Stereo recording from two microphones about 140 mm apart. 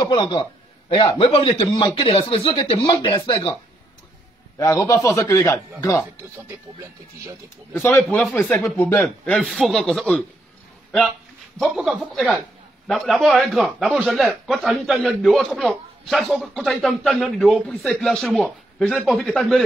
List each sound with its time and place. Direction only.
0.0 s a man's voice: 30° left (ahead or behind)
4.6 s speech: 25° left (ahead or behind)
6.8 s speech: 20° right (ahead or behind)
7.7 s speech: 15° left (ahead or behind)
8.0 s a man's voice: 5° left (ahead or behind)
8.6 s a man's voice: 15° left (ahead or behind)
11.5 s a man's voice: centre (ahead or behind)